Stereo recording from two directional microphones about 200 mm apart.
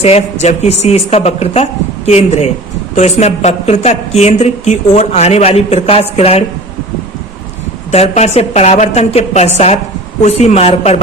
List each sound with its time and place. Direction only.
0.0 s a woman's voice: 30° left (ahead or behind)
7.9 s a woman's voice: 35° left (ahead or behind)